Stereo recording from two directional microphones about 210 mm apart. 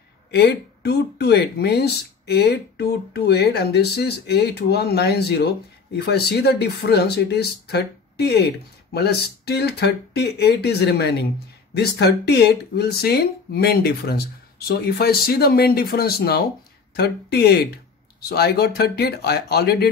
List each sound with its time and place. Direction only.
0.3 s speech: 50° left (ahead or behind)